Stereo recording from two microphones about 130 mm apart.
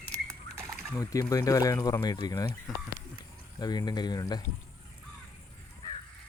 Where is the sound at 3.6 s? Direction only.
30° left (ahead or behind).